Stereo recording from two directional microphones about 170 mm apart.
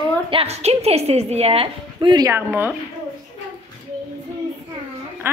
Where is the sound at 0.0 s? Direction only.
30° right (ahead or behind).